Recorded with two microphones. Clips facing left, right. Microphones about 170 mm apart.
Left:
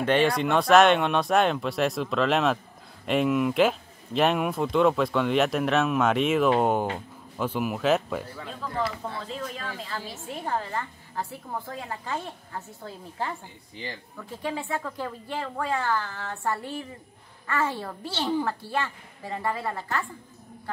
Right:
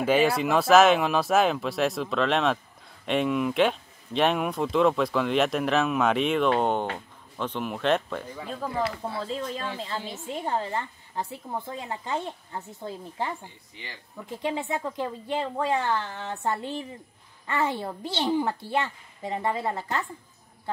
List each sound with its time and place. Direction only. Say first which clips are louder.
0.0 s speech: even; 5° right (ahead or behind)
8.6 s speech: right 3 dB; 45° right (ahead or behind)
9.3 s a woman's voice: right 3 dB; 30° right (ahead or behind)
13.8 s speech: left 7 dB; 35° left (ahead or behind)
14.1 s a woman's voice: right 3 dB; 20° right (ahead or behind)